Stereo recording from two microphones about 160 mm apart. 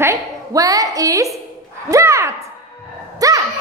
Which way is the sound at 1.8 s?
20° right (ahead or behind).